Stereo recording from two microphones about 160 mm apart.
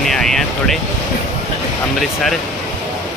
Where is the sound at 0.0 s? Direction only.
5° left (ahead or behind).